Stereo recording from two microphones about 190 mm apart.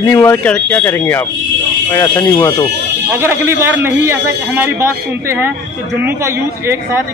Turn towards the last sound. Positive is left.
turn(degrees=-15)  # may be behind; listen again after turning